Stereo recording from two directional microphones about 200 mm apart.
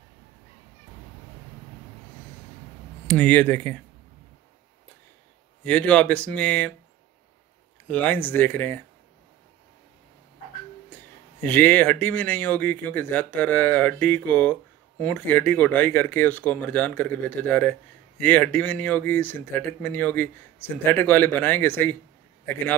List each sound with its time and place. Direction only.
3.1 s speech: 5° left (ahead or behind)
5.6 s speech: 5° left (ahead or behind)
7.9 s speech: 10° left (ahead or behind)
10.9 s speech: 10° left (ahead or behind)